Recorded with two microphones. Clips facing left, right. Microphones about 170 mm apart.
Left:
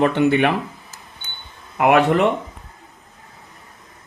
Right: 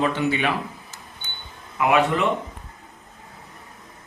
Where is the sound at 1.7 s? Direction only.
60° left (ahead or behind).